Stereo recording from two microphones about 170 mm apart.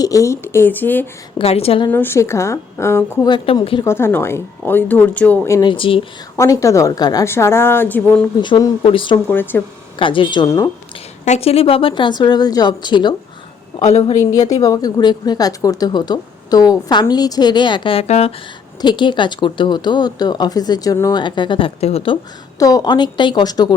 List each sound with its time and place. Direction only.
0.0 s a woman's voice: 20° left (ahead or behind)
1.4 s speech: 35° left (ahead or behind)
1.9 s a woman's voice: 10° left (ahead or behind)
3.2 s speech: 30° left (ahead or behind)
3.8 s a woman's voice: 15° left (ahead or behind)
5.5 s speech: 30° left (ahead or behind)
6.3 s a woman's voice: 15° left (ahead or behind)
8.4 s a woman's voice: 25° left (ahead or behind)
9.3 s a woman's voice: 10° left (ahead or behind)
10.0 s a woman's voice: 30° left (ahead or behind)
13.8 s speech: 40° left (ahead or behind)
14.6 s a woman's voice: 20° left (ahead or behind); by 18.3 s 35° left (ahead or behind)
18.8 s a woman's voice: 25° left (ahead or behind)
22.5 s a woman's voice: 20° left (ahead or behind)